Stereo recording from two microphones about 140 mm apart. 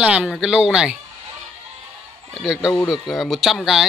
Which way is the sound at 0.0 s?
10° right (ahead or behind).